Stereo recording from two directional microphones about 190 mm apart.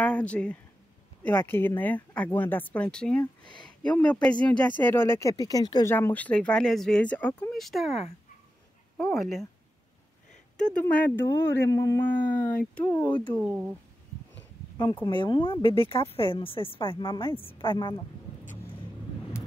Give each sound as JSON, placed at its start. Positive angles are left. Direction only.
{"t": 0.0, "sound": "speech", "side_deg": 5}
{"t": 8.9, "sound": "speech", "side_deg": 0}
{"t": 10.6, "sound": "speech", "side_deg": 5}
{"t": 14.8, "sound": "speech", "side_deg": 25}